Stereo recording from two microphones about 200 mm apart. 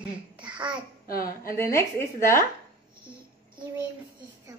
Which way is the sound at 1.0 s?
45° left (ahead or behind).